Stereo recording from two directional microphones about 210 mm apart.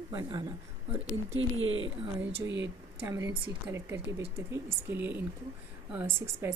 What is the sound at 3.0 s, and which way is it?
A woman's voice, 15° right (ahead or behind).